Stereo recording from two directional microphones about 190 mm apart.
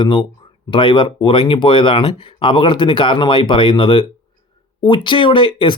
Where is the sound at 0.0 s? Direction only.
25° left (ahead or behind).